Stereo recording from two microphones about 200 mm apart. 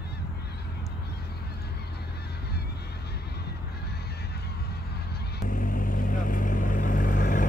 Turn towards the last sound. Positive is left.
turn(degrees=40)  # may be behind; listen again after turning